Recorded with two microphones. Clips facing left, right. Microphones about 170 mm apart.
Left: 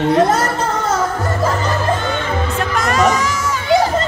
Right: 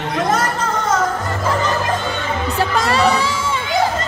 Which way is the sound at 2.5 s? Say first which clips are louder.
Right 4 dB; 30° right (ahead or behind).